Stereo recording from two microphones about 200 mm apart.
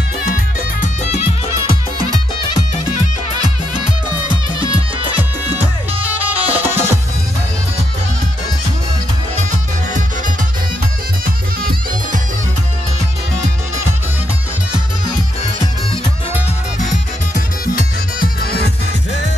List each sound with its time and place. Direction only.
0.7 s music: 35° left (ahead or behind)
5.6 s music: 10° right (ahead or behind)
11.2 s music: 45° right (ahead or behind)
17.3 s music: 45° left (ahead or behind)